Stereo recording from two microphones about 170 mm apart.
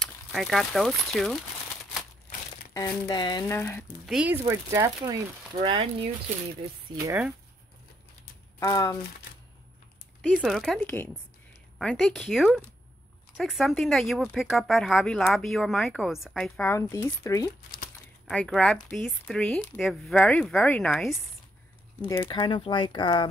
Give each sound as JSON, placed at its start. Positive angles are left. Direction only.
{"t": 0.0, "sound": "speech", "side_deg": 0}
{"t": 2.7, "sound": "speech", "side_deg": 25}
{"t": 3.5, "sound": "speech", "side_deg": 15}
{"t": 4.0, "sound": "speech", "side_deg": -5}
{"t": 4.5, "sound": "speech", "side_deg": -15}
{"t": 8.5, "sound": "speech", "side_deg": 20}
{"t": 10.3, "sound": "speech", "side_deg": 0}
{"t": 16.7, "sound": "speech", "side_deg": 15}
{"t": 18.3, "sound": "speech", "side_deg": 5}
{"t": 22.0, "sound": "speech", "side_deg": 15}
{"t": 22.3, "sound": "speech", "side_deg": 30}